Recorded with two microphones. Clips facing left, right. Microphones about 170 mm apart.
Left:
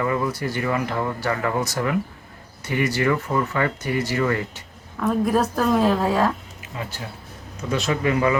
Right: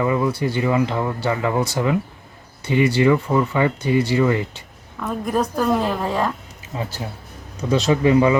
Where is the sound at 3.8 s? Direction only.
30° right (ahead or behind).